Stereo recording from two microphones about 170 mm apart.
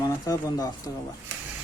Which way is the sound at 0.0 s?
20° left (ahead or behind).